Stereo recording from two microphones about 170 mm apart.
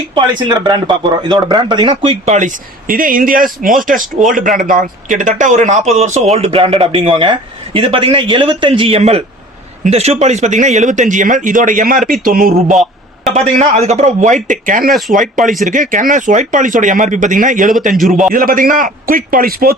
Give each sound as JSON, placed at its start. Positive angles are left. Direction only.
{"t": 0.1, "sound": "speech", "side_deg": -25}
{"t": 2.3, "sound": "a man's voice", "side_deg": -50}
{"t": 13.3, "sound": "speech", "side_deg": -40}
{"t": 18.0, "sound": "a man's voice", "side_deg": 0}
{"t": 18.3, "sound": "a man's voice", "side_deg": -55}